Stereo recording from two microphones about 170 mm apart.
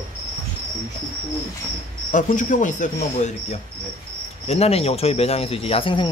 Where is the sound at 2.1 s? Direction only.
50° left (ahead or behind).